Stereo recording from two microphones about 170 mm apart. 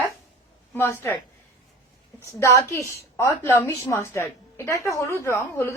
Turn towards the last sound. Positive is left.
turn(degrees=15)  # may be behind; listen again after turning